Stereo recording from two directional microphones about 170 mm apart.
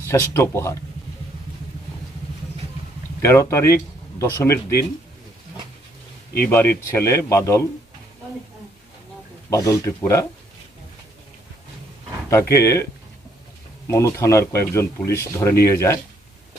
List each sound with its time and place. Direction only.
0.0 s speech: 15° left (ahead or behind)
3.2 s speech: 15° left (ahead or behind)
6.4 s speech: 10° left (ahead or behind)
9.5 s speech: 20° left (ahead or behind)
12.3 s speech: 15° left (ahead or behind)
13.8 s speech: 15° left (ahead or behind)